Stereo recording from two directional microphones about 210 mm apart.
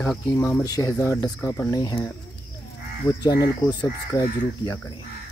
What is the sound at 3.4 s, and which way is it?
Speech, 20° left (ahead or behind).